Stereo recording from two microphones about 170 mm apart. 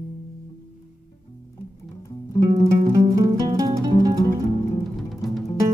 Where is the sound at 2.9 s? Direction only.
20° right (ahead or behind).